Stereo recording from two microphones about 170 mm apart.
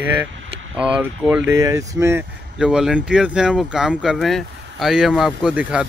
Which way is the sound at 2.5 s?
5° right (ahead or behind).